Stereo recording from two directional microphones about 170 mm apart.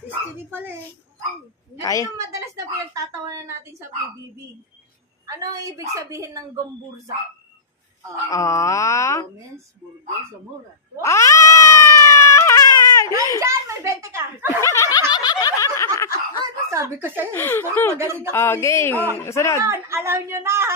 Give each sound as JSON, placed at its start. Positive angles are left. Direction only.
{"t": 1.8, "sound": "speech", "side_deg": 20}
{"t": 2.9, "sound": "a child's voice", "side_deg": -15}
{"t": 5.2, "sound": "a woman's voice", "side_deg": -20}
{"t": 8.3, "sound": "speech", "side_deg": 20}
{"t": 11.0, "sound": "cat", "side_deg": 15}
{"t": 13.4, "sound": "a child's voice", "side_deg": -15}
{"t": 14.6, "sound": "cat", "side_deg": 15}
{"t": 15.1, "sound": "snicker", "side_deg": 25}
{"t": 16.6, "sound": "a child's voice", "side_deg": -20}
{"t": 17.3, "sound": "cat", "side_deg": 15}
{"t": 17.9, "sound": "a child's voice", "side_deg": -15}
{"t": 18.3, "sound": "cat", "side_deg": 15}
{"t": 19.6, "sound": "a child's voice", "side_deg": -15}